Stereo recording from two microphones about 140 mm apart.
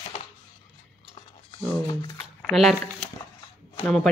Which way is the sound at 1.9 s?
30° left (ahead or behind).